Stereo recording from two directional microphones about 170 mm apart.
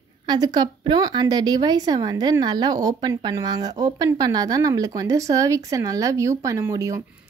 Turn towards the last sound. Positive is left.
turn(degrees=-20)  # may be behind; listen again after turning